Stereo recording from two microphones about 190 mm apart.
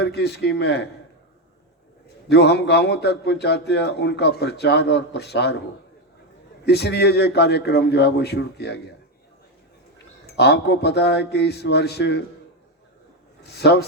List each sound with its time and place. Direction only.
0.0 s a man's voice: 60° left (ahead or behind)
2.3 s a man's voice: 60° left (ahead or behind)
6.7 s a man's voice: 60° left (ahead or behind)
10.2 s a man's voice: 60° left (ahead or behind)
13.4 s speech: 60° left (ahead or behind)